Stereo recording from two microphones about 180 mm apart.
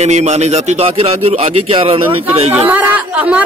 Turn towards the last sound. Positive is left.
turn(degrees=-10)  # may be behind; listen again after turning